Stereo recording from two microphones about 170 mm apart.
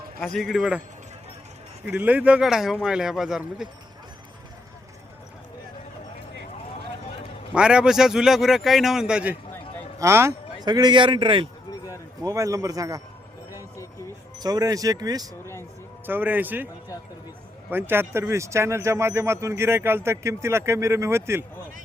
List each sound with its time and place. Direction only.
0.2 s a man's voice: centre (ahead or behind)
1.9 s a man's voice: 10° right (ahead or behind)
7.5 s a man's voice: 5° right (ahead or behind); by 11.4 s 30° right (ahead or behind)
12.2 s speech: 20° right (ahead or behind)
13.5 s a sound: 15° left (ahead or behind)
14.3 s speech: 20° right (ahead or behind)
16.0 s speech: 10° right (ahead or behind)
17.7 s speech: 10° right (ahead or behind)